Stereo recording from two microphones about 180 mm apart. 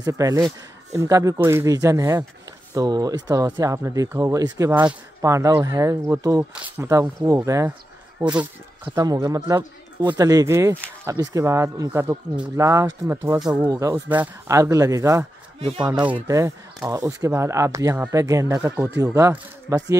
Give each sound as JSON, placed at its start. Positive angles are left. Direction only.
{"t": 0.0, "sound": "speech", "side_deg": -20}
{"t": 8.9, "sound": "speech", "side_deg": -20}
{"t": 15.6, "sound": "speech", "side_deg": -35}
{"t": 16.3, "sound": "speech", "side_deg": -15}